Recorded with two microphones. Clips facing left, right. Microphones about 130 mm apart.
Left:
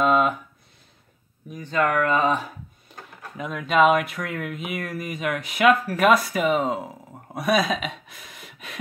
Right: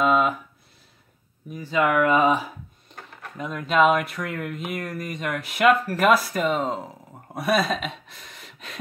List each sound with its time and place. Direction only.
0.0 s a sound: centre (ahead or behind)
1.5 s speech: 5° right (ahead or behind)
2.9 s speech: 5° left (ahead or behind)